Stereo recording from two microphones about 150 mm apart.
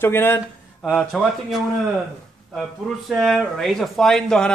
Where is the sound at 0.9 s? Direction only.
Centre (ahead or behind).